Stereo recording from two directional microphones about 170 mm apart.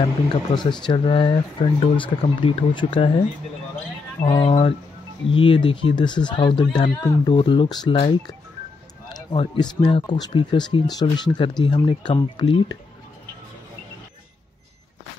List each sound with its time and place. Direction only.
0.5 s speech: 35° left (ahead or behind)
4.2 s speech: 30° left (ahead or behind)